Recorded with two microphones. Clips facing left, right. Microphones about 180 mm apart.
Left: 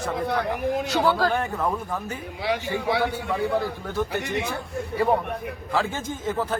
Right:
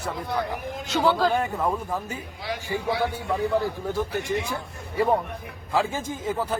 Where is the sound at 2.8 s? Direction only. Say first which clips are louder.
Right 1 dB; 70° left (ahead or behind).